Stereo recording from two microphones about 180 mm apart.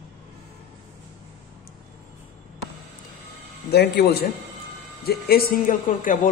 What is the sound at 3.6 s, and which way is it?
A man's voice, 60° left (ahead or behind).